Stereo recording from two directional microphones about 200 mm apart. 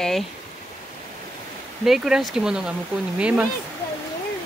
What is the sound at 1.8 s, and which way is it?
Speech, centre (ahead or behind).